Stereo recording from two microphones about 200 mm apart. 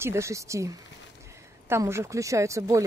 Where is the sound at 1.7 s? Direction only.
15° right (ahead or behind).